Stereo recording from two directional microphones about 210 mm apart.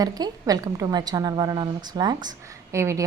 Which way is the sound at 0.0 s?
20° right (ahead or behind).